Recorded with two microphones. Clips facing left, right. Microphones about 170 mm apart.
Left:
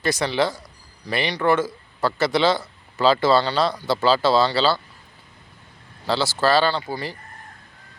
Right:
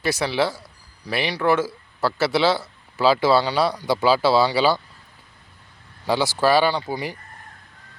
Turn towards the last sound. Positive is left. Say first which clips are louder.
# right 1 dB
turn(degrees=-15)  # may be behind; listen again after turning